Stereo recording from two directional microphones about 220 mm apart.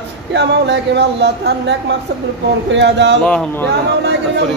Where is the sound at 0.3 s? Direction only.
50° right (ahead or behind).